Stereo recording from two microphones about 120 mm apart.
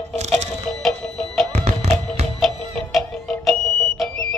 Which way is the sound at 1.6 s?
75° right (ahead or behind).